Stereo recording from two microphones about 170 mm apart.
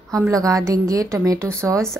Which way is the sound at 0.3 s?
20° right (ahead or behind).